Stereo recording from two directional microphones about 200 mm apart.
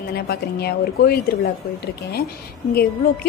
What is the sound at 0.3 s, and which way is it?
Speech, 50° left (ahead or behind).